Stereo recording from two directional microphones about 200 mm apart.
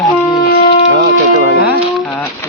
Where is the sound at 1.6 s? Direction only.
5° right (ahead or behind).